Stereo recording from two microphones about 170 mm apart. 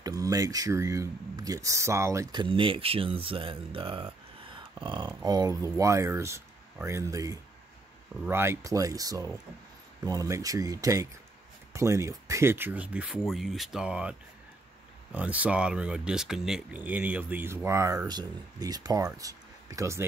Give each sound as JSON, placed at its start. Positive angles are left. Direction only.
{"t": 0.0, "sound": "speech", "side_deg": -20}
{"t": 2.4, "sound": "speech", "side_deg": -30}
{"t": 15.1, "sound": "speech", "side_deg": -10}